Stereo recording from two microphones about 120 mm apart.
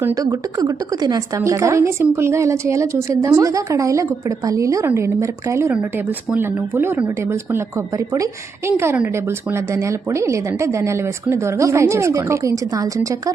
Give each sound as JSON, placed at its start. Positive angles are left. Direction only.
{"t": 0.0, "sound": "a woman's voice", "side_deg": -30}